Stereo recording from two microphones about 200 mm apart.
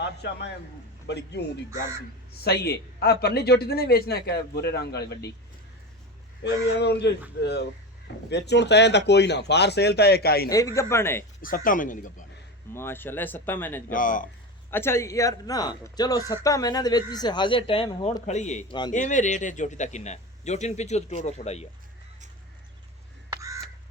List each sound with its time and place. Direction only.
0.0 s a man's voice: 55° left (ahead or behind)
6.4 s speech: 60° left (ahead or behind)
10.5 s speech: 15° left (ahead or behind)
11.4 s a man's voice: 45° left (ahead or behind)
12.7 s speech: 10° left (ahead or behind)
13.9 s a man's voice: 40° left (ahead or behind)
14.7 s speech: 10° left (ahead or behind)
18.3 s a man's voice: 35° left (ahead or behind)
23.3 s crow: 15° right (ahead or behind)